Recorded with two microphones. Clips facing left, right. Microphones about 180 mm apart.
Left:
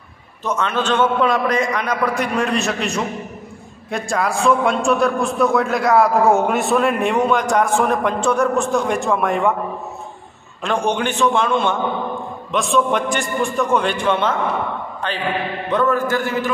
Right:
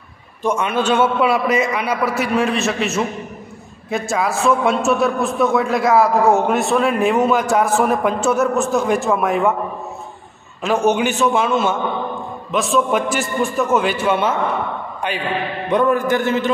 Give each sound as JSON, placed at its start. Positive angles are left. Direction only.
{"t": 0.4, "sound": "a man's voice", "side_deg": -10}
{"t": 10.6, "sound": "a man's voice", "side_deg": -5}